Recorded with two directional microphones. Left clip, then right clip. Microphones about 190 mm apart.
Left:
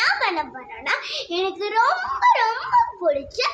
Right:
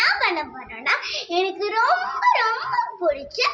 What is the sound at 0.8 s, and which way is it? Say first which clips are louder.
A child's voice: right 2 dB; 5° left (ahead or behind).